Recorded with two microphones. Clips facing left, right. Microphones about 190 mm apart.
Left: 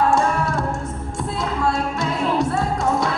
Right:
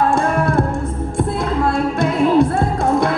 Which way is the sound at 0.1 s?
55° right (ahead or behind).